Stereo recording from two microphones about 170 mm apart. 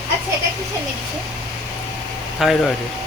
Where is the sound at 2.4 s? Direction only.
Centre (ahead or behind).